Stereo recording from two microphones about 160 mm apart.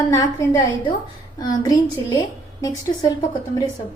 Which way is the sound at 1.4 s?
25° left (ahead or behind).